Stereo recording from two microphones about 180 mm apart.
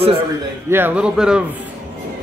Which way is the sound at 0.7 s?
10° right (ahead or behind).